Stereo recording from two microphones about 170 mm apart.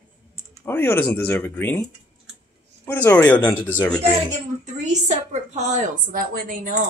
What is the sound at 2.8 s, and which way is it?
Speech, 10° left (ahead or behind).